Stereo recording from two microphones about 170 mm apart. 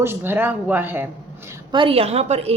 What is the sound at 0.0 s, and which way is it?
Speech, 15° right (ahead or behind).